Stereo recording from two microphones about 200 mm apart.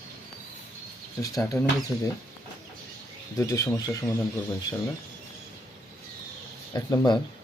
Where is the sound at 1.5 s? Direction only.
15° left (ahead or behind).